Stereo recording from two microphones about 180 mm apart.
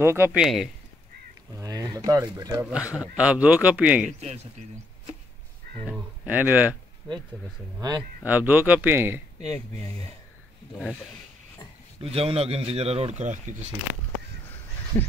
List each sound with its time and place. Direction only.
0.0 s speech: 15° right (ahead or behind)
1.6 s speech: 20° right (ahead or behind)
2.7 s a man's voice: 5° right (ahead or behind)
5.9 s speech: 10° right (ahead or behind)
8.2 s speech: 10° right (ahead or behind)
12.0 s speech: 35° right (ahead or behind)
14.9 s frog: 10° left (ahead or behind)